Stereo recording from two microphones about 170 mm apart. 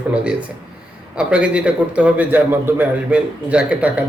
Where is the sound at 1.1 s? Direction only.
5° right (ahead or behind).